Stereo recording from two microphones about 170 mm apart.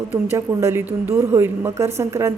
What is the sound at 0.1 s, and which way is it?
A woman's voice, 15° right (ahead or behind).